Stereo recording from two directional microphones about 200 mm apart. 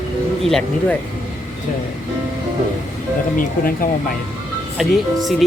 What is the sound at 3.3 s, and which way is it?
Speech, 45° left (ahead or behind).